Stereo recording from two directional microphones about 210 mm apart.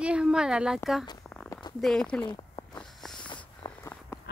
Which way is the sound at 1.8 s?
Centre (ahead or behind).